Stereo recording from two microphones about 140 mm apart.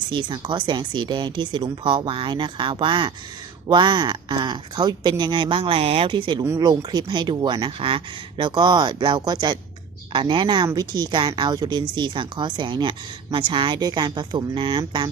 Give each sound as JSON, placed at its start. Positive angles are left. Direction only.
{"t": 0.1, "sound": "speech", "side_deg": -35}
{"t": 6.4, "sound": "speech", "side_deg": -25}